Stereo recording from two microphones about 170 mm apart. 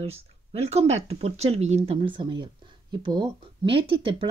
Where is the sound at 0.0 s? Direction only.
35° right (ahead or behind).